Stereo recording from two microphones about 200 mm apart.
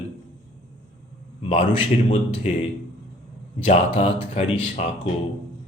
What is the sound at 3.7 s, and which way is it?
Speech, 30° left (ahead or behind).